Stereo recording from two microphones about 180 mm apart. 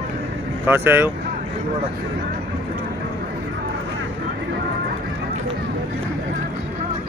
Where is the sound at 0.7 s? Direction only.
10° right (ahead or behind).